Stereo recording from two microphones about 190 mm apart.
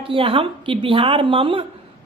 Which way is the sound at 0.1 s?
30° right (ahead or behind).